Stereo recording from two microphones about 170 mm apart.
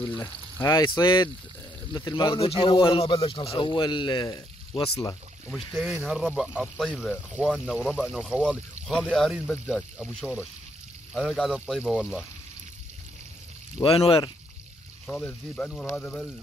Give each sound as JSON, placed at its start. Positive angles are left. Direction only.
{"t": 0.0, "sound": "speech", "side_deg": 10}
{"t": 5.7, "sound": "speech", "side_deg": 0}
{"t": 13.8, "sound": "speech", "side_deg": 35}
{"t": 15.0, "sound": "speech", "side_deg": 5}